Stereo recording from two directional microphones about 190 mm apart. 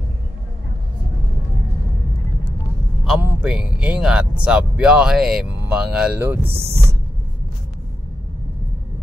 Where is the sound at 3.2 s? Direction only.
5° right (ahead or behind).